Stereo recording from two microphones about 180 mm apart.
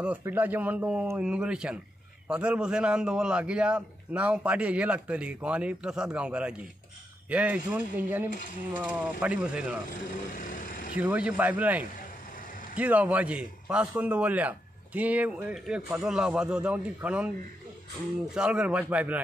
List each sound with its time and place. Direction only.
0.0 s a man's voice: 10° right (ahead or behind)
9.8 s vehicle: 45° left (ahead or behind)
11.0 s a man's voice: 5° right (ahead or behind)
18.3 s a man's voice: 5° right (ahead or behind)